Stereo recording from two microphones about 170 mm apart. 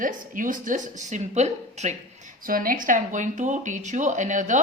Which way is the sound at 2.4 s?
55° right (ahead or behind).